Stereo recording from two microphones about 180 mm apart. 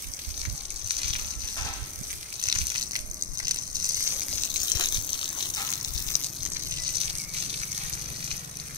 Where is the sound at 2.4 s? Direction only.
25° right (ahead or behind).